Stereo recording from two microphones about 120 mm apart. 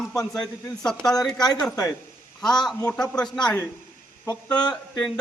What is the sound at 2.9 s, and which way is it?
Speech, 5° left (ahead or behind).